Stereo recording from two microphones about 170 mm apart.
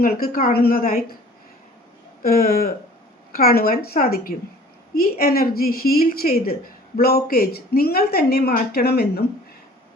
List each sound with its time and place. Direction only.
0.0 s a woman's voice: 60° left (ahead or behind)
2.2 s a woman's voice: 60° left (ahead or behind)